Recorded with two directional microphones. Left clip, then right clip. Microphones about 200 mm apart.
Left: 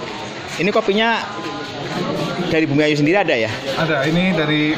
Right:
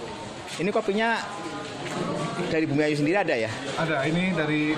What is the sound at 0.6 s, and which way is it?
Speech, centre (ahead or behind).